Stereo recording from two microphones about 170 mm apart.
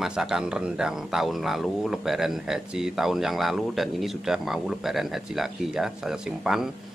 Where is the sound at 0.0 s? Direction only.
5° right (ahead or behind).